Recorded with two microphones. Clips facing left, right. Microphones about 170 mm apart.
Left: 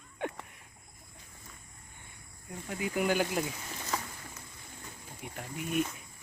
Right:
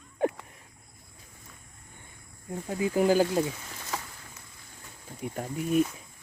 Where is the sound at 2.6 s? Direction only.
30° right (ahead or behind).